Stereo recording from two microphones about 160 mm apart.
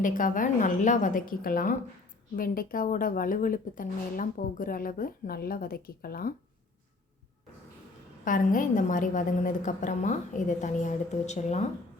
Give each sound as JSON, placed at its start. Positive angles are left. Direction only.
{"t": 0.0, "sound": "speech", "side_deg": 55}
{"t": 8.2, "sound": "a woman's voice", "side_deg": 55}